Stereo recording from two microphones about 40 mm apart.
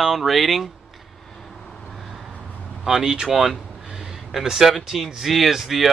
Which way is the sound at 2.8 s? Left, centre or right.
Centre.